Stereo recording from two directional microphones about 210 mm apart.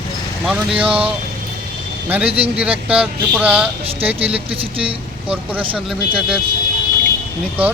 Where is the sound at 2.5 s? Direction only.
5° right (ahead or behind).